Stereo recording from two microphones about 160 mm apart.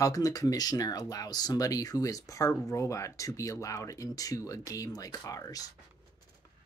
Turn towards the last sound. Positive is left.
turn(degrees=20)  # may be behind; listen again after turning